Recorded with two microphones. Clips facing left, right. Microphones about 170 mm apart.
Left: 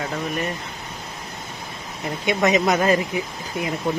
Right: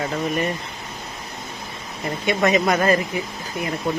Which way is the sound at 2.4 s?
5° left (ahead or behind).